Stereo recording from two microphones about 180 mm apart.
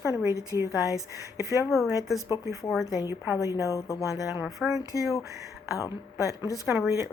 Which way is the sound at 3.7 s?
20° left (ahead or behind).